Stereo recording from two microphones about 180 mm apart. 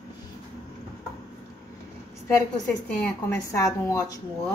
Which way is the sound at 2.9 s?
15° left (ahead or behind).